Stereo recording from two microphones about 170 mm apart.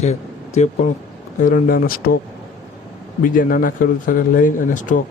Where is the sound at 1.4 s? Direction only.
55° left (ahead or behind).